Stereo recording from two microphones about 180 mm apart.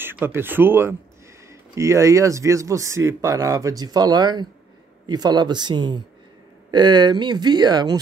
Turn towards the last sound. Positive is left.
turn(degrees=-20)  # may be behind; listen again after turning